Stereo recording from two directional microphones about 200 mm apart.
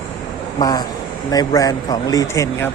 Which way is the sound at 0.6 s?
20° left (ahead or behind).